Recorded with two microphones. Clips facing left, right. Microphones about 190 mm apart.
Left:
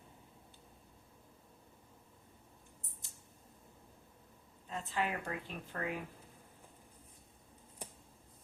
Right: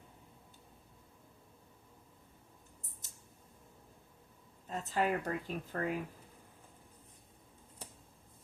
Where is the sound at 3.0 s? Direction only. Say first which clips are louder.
Even; 40° right (ahead or behind).